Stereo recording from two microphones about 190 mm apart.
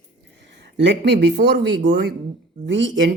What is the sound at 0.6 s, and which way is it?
A woman's voice, 65° right (ahead or behind).